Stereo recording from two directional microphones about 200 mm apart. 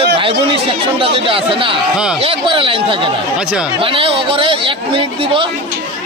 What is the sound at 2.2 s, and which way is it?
Speech, 25° right (ahead or behind).